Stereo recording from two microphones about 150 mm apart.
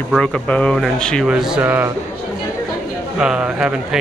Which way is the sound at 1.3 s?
5° right (ahead or behind).